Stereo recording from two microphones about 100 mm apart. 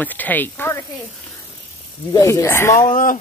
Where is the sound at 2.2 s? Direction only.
30° left (ahead or behind).